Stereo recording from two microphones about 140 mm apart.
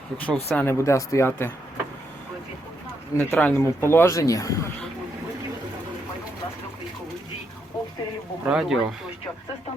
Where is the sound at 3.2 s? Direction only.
10° left (ahead or behind).